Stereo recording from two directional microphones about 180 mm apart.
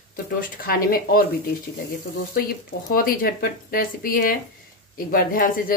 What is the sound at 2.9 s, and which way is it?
Speech, 55° left (ahead or behind).